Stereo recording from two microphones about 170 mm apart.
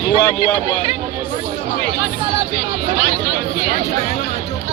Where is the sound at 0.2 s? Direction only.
15° left (ahead or behind).